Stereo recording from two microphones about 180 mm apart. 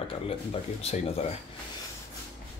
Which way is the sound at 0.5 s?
35° left (ahead or behind).